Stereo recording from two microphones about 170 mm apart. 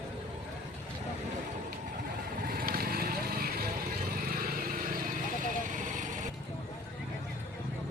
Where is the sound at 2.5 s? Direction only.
60° right (ahead or behind).